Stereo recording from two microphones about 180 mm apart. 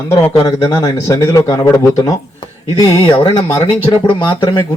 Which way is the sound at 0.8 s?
20° left (ahead or behind).